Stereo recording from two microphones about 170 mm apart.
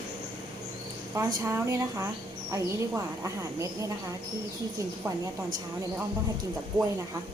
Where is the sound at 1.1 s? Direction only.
15° right (ahead or behind).